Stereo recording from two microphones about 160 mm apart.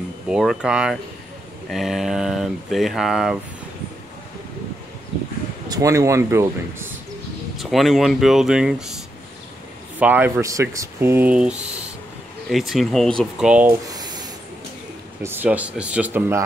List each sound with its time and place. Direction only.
0.3 s speech: 5° right (ahead or behind)
5.7 s speech: 20° right (ahead or behind)
7.5 s speech: centre (ahead or behind)
13.8 s a sound: 25° right (ahead or behind)
15.2 s speech: 10° right (ahead or behind)